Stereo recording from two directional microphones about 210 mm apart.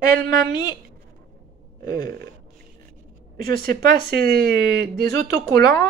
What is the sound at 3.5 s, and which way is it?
Speech, 50° right (ahead or behind).